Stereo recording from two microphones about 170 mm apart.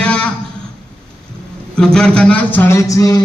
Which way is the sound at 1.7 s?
5° left (ahead or behind).